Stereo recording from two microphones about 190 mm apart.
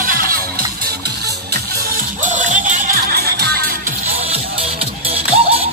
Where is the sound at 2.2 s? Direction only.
45° right (ahead or behind).